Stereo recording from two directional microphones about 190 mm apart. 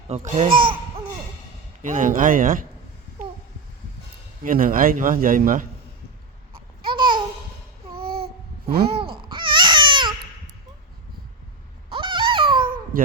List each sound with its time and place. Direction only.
0.3 s a man's voice: 40° right (ahead or behind)
1.8 s a man's voice: 40° right (ahead or behind)
4.4 s a man's voice: 45° right (ahead or behind)
6.9 s babbling: 25° right (ahead or behind)
7.9 s babbling: 55° right (ahead or behind)
9.3 s baby cry: 25° right (ahead or behind)
11.9 s a sound: 25° right (ahead or behind)
12.6 s a sound: 50° right (ahead or behind)